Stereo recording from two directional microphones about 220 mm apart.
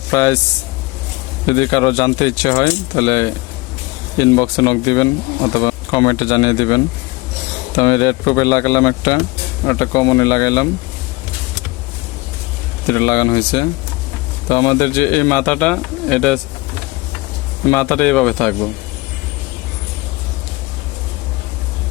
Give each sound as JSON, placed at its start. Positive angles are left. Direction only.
{"t": 0.1, "sound": "speech", "side_deg": 15}
{"t": 1.5, "sound": "speech", "side_deg": 20}
{"t": 12.9, "sound": "speech", "side_deg": 15}
{"t": 17.7, "sound": "speech", "side_deg": 10}